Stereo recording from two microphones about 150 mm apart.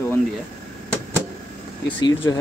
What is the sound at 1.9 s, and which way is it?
Speech, 30° left (ahead or behind).